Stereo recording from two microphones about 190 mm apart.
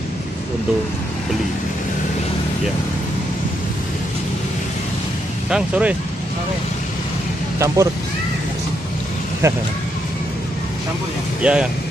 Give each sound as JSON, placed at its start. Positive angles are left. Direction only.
{"t": 5.5, "sound": "speech", "side_deg": -5}
{"t": 7.5, "sound": "speech", "side_deg": -15}
{"t": 9.4, "sound": "speech", "side_deg": -15}
{"t": 11.4, "sound": "speech", "side_deg": -5}